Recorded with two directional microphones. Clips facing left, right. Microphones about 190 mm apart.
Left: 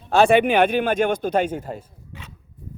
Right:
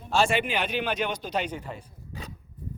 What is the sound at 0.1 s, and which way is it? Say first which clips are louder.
A man's voice: left 9 dB; 60° left (ahead or behind).